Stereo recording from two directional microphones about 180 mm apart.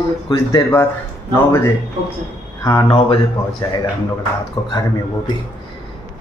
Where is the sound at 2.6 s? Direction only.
25° left (ahead or behind).